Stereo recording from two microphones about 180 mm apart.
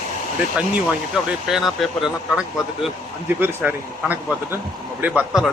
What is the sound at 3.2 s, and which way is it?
Speech, 10° right (ahead or behind).